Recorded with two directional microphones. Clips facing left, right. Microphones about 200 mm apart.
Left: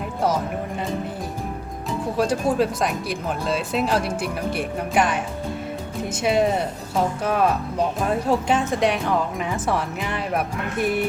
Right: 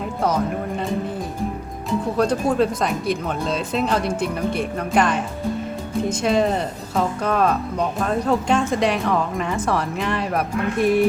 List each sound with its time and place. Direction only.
1.9 s speech: 5° left (ahead or behind)